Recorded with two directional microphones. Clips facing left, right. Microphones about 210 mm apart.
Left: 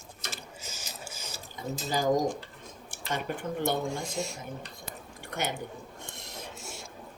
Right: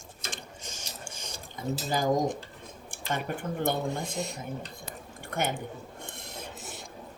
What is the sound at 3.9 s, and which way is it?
Speech, centre (ahead or behind).